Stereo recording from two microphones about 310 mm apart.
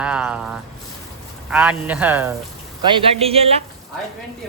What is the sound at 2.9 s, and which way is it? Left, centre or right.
Speech, centre.